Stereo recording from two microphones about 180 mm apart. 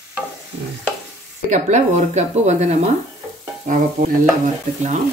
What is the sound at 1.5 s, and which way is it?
Speech, 40° right (ahead or behind).